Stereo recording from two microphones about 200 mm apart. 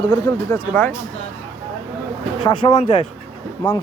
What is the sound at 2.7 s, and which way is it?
Speech, 30° left (ahead or behind).